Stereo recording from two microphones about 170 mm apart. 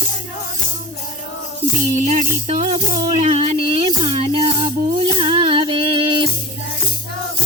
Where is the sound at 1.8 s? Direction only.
50° right (ahead or behind); by 6.3 s 30° right (ahead or behind).